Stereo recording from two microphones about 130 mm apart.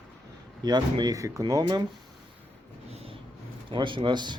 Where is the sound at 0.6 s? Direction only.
35° right (ahead or behind).